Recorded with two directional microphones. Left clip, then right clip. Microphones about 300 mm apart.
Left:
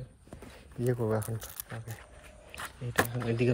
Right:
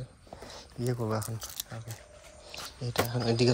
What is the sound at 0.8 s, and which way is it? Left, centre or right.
Speech, centre.